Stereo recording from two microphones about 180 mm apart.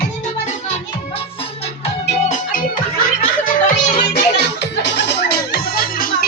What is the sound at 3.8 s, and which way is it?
Music, 55° left (ahead or behind).